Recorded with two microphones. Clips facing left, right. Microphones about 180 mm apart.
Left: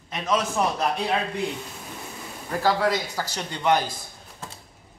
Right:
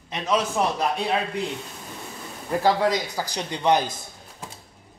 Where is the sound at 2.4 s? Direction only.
15° right (ahead or behind).